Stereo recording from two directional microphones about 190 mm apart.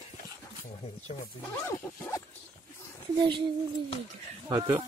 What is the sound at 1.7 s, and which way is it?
Speech, 10° left (ahead or behind).